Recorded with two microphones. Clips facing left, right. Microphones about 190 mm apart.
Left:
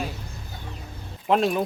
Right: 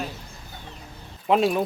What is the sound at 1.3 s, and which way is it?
Livestock, centre (ahead or behind).